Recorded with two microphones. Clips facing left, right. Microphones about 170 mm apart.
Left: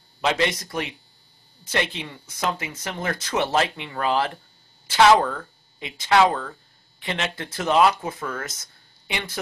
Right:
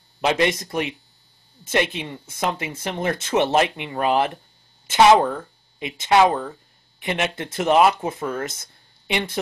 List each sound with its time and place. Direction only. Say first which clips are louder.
0.2 s speech: right 3 dB; 20° right (ahead or behind)
2.0 s speech: right 3 dB; 20° right (ahead or behind)